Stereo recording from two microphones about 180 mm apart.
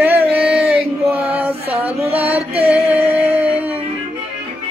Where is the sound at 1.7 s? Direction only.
35° right (ahead or behind).